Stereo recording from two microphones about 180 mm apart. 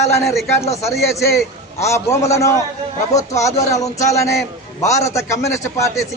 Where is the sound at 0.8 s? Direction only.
15° left (ahead or behind).